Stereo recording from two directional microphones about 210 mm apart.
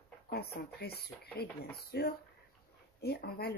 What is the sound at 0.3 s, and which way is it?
Speech, 50° left (ahead or behind).